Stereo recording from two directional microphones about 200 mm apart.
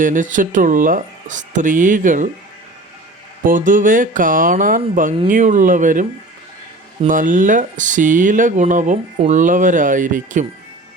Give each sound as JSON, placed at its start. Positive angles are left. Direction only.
{"t": 0.0, "sound": "speech", "side_deg": -40}
{"t": 3.4, "sound": "speech", "side_deg": -40}
{"t": 7.1, "sound": "speech", "side_deg": -40}